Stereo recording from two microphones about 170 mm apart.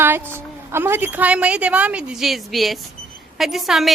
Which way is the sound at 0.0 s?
10° right (ahead or behind).